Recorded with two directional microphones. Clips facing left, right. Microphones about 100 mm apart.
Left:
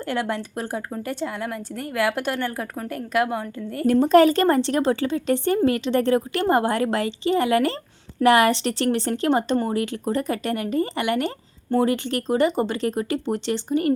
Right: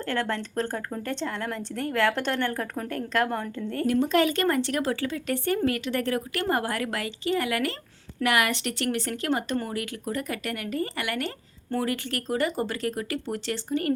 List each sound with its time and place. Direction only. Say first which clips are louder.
0.0 s speech: left 3 dB; 15° left (ahead or behind)
3.8 s a woman's voice: left 8 dB; 40° left (ahead or behind); by 13.9 s 20° left (ahead or behind)